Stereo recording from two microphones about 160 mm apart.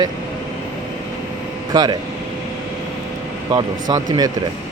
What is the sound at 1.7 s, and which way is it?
Speech, 25° right (ahead or behind).